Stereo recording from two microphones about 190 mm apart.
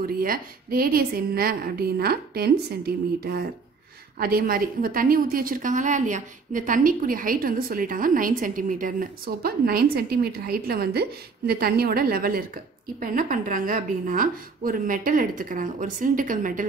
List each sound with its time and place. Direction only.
0.0 s a woman's voice: 50° right (ahead or behind)